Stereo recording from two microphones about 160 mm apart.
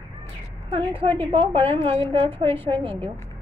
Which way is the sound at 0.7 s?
35° right (ahead or behind).